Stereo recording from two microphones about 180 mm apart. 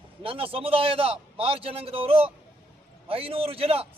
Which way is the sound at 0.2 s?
30° right (ahead or behind).